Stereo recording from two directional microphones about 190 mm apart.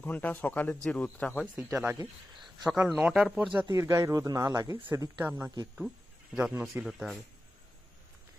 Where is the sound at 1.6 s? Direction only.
5° right (ahead or behind).